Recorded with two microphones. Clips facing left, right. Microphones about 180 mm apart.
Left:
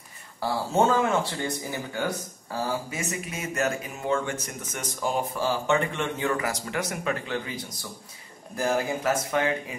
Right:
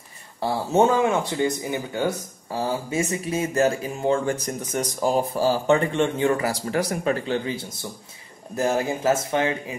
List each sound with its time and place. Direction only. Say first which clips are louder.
0.4 s speech: right 4 dB; 20° right (ahead or behind)